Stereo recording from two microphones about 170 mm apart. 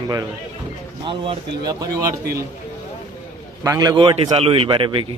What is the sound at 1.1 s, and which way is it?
Speech, 25° right (ahead or behind).